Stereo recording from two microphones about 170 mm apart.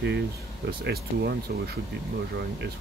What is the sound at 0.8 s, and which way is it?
Speech, 70° right (ahead or behind).